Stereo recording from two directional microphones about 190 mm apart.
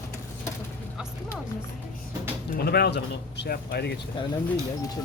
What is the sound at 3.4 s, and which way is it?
Speech, 55° left (ahead or behind).